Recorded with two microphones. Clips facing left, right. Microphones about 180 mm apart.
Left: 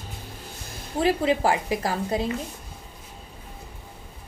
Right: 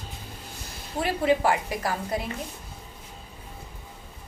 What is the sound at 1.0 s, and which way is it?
A woman's voice, 30° left (ahead or behind).